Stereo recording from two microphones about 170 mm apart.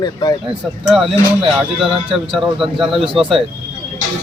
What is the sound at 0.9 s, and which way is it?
Speech, centre (ahead or behind).